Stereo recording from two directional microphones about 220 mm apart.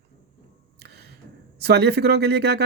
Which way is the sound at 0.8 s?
50° right (ahead or behind).